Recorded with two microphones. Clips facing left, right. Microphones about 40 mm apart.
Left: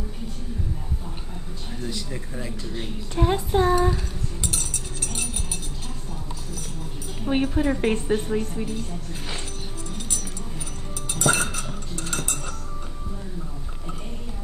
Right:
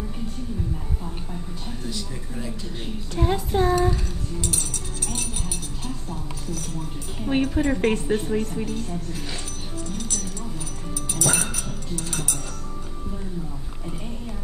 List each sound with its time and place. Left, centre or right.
1.9 s a woman's voice: centre
7.2 s speech: centre
11.1 s music: left